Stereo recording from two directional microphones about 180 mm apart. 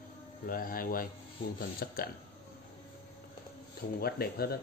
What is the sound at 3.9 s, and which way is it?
Speech, 60° left (ahead or behind).